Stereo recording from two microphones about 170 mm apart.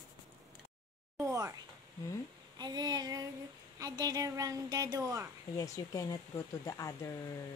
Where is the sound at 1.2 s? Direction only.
15° right (ahead or behind).